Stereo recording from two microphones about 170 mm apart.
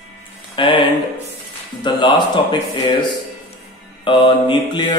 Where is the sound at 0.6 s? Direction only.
30° left (ahead or behind).